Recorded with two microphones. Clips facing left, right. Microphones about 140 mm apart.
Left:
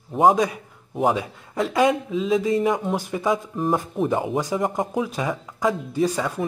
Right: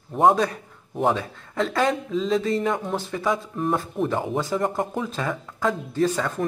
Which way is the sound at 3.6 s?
5° left (ahead or behind).